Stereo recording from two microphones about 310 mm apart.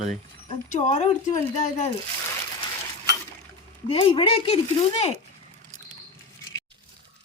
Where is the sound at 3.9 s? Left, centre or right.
Centre.